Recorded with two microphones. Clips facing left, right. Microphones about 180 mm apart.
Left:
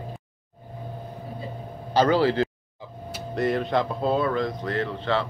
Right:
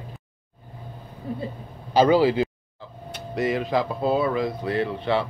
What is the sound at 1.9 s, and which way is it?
Speech, 10° right (ahead or behind).